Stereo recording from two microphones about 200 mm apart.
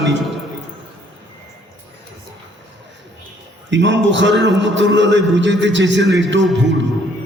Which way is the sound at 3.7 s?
65° right (ahead or behind).